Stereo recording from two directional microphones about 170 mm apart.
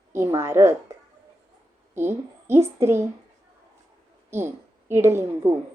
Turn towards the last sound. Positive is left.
turn(degrees=-15)  # may be behind; listen again after turning